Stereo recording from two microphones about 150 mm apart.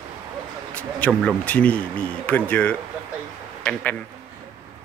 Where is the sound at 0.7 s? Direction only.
10° left (ahead or behind).